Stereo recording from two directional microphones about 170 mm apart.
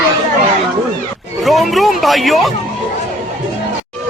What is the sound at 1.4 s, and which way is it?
A man's voice, centre (ahead or behind).